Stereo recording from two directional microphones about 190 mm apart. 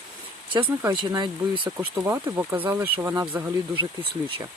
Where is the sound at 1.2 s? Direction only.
25° right (ahead or behind).